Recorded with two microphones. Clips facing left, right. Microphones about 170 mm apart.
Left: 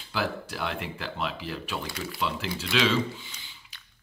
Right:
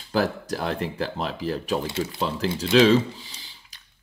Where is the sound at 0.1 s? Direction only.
40° right (ahead or behind).